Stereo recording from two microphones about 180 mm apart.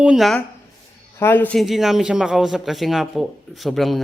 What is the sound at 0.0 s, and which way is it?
A man's voice, 5° right (ahead or behind).